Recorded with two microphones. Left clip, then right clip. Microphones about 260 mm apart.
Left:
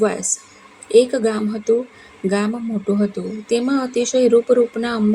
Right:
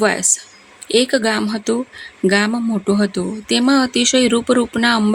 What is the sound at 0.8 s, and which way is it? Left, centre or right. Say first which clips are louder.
Speech: left 1 dB; right.